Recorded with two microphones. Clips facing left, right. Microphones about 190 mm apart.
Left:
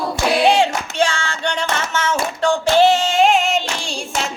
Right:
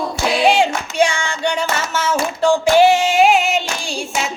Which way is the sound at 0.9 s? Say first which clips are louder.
Right 4 dB; 15° right (ahead or behind).